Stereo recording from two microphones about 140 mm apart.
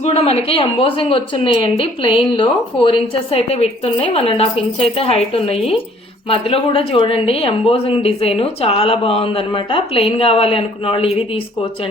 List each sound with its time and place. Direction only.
0.0 s a woman's voice: 50° left (ahead or behind)